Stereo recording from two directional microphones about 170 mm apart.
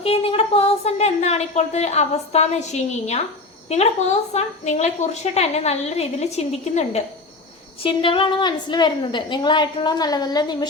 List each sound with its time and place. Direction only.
0.0 s a woman's voice: 35° left (ahead or behind)